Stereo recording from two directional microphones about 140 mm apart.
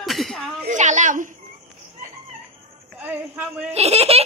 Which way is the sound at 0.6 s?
60° right (ahead or behind).